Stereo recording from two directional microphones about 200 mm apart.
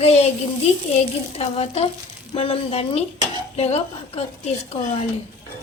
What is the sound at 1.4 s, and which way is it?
A woman's voice, 30° left (ahead or behind).